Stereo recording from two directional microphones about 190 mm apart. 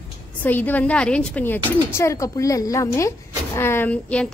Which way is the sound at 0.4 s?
10° left (ahead or behind).